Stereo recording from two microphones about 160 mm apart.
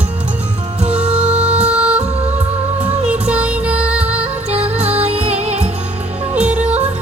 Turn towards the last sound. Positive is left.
turn(degrees=-5)  # may be behind; listen again after turning